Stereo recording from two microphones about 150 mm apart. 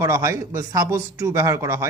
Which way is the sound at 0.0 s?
20° right (ahead or behind).